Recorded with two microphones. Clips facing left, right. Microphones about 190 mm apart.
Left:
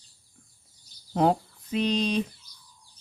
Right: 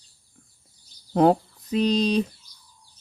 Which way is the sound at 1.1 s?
45° right (ahead or behind).